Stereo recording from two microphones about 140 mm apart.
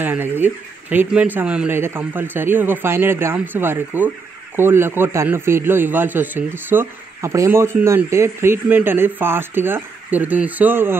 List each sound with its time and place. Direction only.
0.0 s a man's voice: 15° right (ahead or behind)